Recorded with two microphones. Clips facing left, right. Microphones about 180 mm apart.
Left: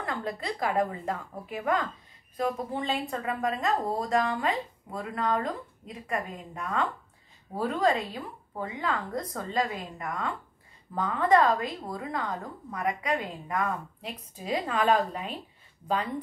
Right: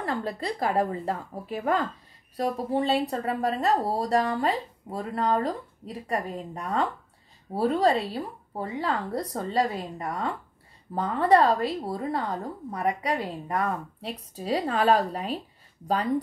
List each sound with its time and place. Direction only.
0.0 s speech: 35° right (ahead or behind)